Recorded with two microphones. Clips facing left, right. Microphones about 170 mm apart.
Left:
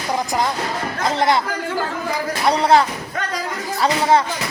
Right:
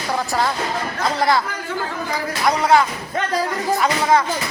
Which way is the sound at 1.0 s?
20° left (ahead or behind).